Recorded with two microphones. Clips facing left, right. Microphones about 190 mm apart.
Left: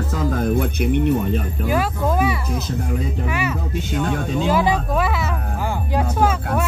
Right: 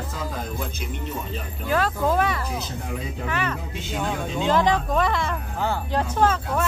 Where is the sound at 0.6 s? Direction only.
65° left (ahead or behind).